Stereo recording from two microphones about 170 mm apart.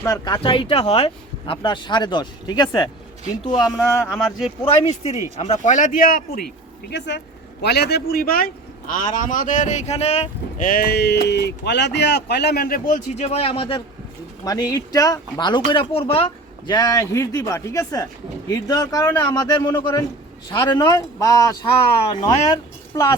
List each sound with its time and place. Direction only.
0.0 s speech: 20° left (ahead or behind)
0.4 s speech: 30° left (ahead or behind)
3.7 s speech: centre (ahead or behind)
4.6 s speech: 35° left (ahead or behind); by 6.4 s 55° left (ahead or behind)
6.9 s speech: 90° left
7.6 s a man's voice: 75° left (ahead or behind); by 10.2 s 40° left (ahead or behind)
10.6 s speech: 60° left (ahead or behind); by 16.2 s 35° left (ahead or behind)
16.6 s speech: 25° left (ahead or behind)